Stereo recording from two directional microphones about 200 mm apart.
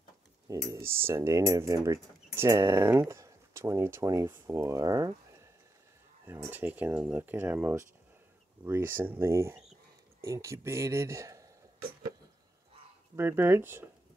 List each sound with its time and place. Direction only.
0.5 s speech: 15° right (ahead or behind)
13.1 s speech: 10° right (ahead or behind)